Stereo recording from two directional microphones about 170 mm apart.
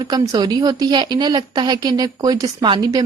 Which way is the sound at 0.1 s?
25° right (ahead or behind).